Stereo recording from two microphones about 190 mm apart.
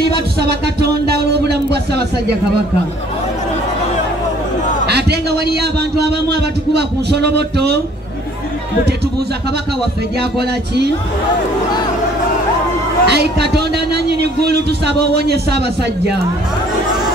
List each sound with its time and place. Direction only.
0.4 s a sound: 60° right (ahead or behind)
4.8 s a man's voice: 60° right (ahead or behind)
13.0 s a man's voice: 60° right (ahead or behind)